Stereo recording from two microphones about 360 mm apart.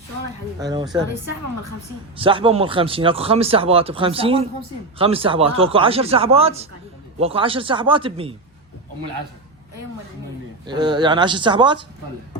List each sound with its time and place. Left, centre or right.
0.6 s speech: centre
2.1 s speech: centre
10.7 s speech: centre